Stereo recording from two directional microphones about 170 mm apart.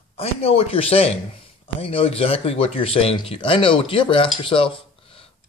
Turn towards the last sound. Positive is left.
turn(degrees=30)  # may be behind; listen again after turning